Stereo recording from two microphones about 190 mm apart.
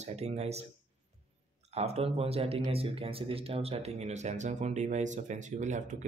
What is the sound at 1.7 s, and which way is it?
Speech, 35° right (ahead or behind).